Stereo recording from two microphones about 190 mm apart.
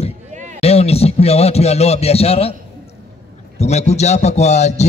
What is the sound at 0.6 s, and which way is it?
A man's voice, 30° left (ahead or behind).